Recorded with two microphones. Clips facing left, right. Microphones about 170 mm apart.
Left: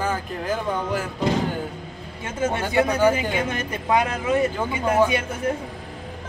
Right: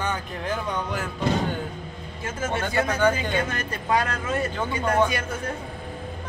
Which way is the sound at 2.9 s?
10° left (ahead or behind).